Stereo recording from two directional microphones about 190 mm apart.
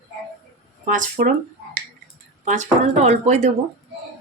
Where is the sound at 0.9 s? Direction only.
45° right (ahead or behind).